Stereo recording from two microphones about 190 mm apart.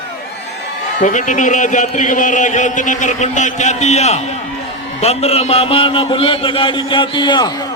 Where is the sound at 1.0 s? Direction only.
40° left (ahead or behind).